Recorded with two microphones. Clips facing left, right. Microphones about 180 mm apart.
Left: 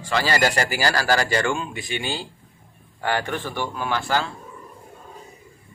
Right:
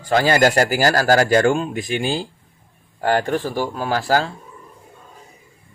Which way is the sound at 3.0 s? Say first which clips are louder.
Right 6 dB; 40° right (ahead or behind).